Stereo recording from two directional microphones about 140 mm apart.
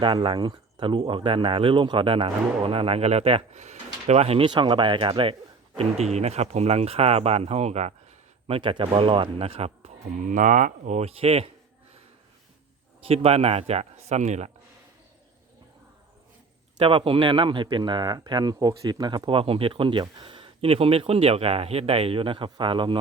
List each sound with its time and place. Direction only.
0.0 s speech: 35° right (ahead or behind)
8.4 s speech: 40° right (ahead or behind)
10.2 s speech: 65° right (ahead or behind); by 11.5 s 45° right (ahead or behind)
13.0 s speech: 45° right (ahead or behind)
16.7 s speech: 40° right (ahead or behind)